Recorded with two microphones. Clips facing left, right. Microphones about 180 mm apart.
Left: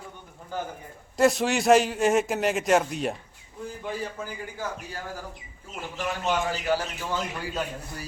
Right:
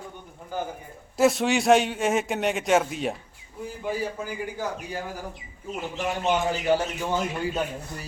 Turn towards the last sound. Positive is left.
turn(degrees=-20)  # may be behind; listen again after turning